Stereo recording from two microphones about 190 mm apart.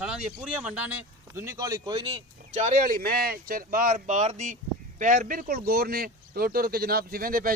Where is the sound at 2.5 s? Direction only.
40° right (ahead or behind).